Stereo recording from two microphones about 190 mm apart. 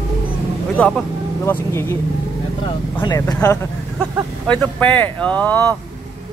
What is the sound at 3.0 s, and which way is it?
Speech, 15° left (ahead or behind).